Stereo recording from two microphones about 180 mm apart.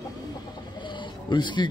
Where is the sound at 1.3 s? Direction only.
25° left (ahead or behind).